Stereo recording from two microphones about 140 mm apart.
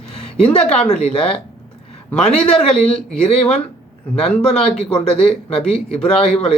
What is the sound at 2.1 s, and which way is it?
Speech, 5° left (ahead or behind).